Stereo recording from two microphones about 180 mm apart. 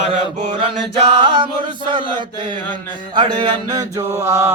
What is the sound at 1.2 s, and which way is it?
Chant, 30° right (ahead or behind).